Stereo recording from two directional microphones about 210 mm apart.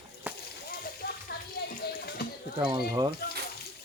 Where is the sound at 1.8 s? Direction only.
50° left (ahead or behind).